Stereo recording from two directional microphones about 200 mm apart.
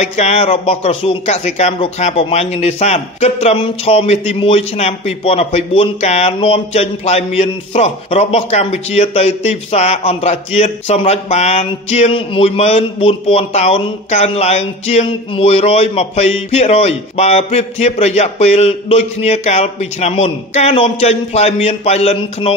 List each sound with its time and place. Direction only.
0.0 s speech: 35° left (ahead or behind)